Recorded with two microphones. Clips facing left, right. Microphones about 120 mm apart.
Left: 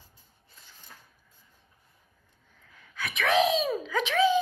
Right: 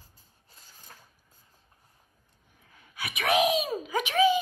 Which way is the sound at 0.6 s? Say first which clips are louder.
Right 1 dB; 40° right (ahead or behind).